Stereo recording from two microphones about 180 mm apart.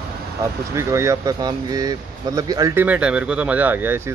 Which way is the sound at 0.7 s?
15° right (ahead or behind).